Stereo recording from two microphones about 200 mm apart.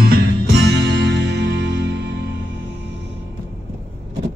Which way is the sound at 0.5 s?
60° right (ahead or behind).